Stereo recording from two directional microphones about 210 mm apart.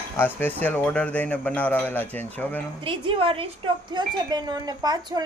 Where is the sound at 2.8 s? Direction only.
25° right (ahead or behind).